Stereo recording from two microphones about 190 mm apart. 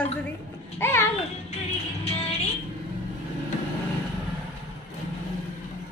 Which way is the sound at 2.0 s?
35° left (ahead or behind).